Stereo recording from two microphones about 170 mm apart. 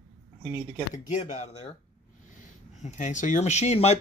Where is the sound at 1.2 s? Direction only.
35° left (ahead or behind).